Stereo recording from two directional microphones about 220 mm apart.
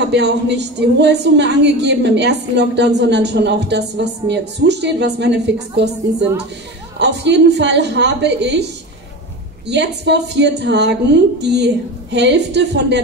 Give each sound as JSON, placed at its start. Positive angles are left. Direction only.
{"t": 0.0, "sound": "a woman's voice", "side_deg": -50}
{"t": 7.0, "sound": "a woman's voice", "side_deg": -50}
{"t": 9.7, "sound": "a woman's voice", "side_deg": -50}